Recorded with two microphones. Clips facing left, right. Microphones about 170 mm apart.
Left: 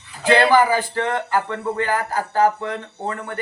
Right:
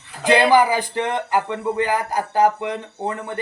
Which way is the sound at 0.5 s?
15° right (ahead or behind).